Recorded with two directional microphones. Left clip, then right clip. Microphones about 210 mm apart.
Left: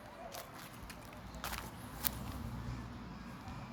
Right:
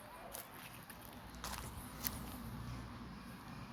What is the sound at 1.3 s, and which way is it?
Vehicle, 25° left (ahead or behind).